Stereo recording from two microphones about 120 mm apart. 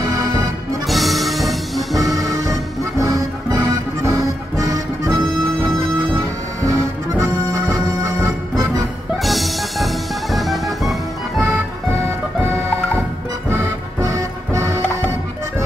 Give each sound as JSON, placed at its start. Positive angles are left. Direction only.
{"t": 0.8, "sound": "music", "side_deg": 0}
{"t": 2.0, "sound": "music", "side_deg": -30}
{"t": 7.2, "sound": "music", "side_deg": -30}
{"t": 9.2, "sound": "music", "side_deg": 0}
{"t": 13.5, "sound": "music", "side_deg": -25}